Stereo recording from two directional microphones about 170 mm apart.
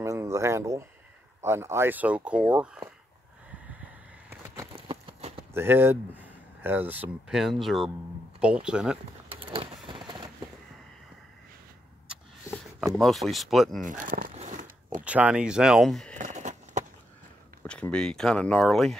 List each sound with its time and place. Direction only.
0.0 s speech: 15° right (ahead or behind)
4.7 s a sound: 35° right (ahead or behind)
5.5 s speech: 15° right (ahead or behind)
9.3 s vehicle: 30° right (ahead or behind)
9.8 s a sound: 30° right (ahead or behind)
12.8 s speech: centre (ahead or behind)
13.8 s speech: 50° right (ahead or behind)
14.3 s biting: 45° right (ahead or behind)
15.0 s speech: 10° right (ahead or behind)
16.2 s a sound: 45° right (ahead or behind)
17.6 s speech: 5° left (ahead or behind)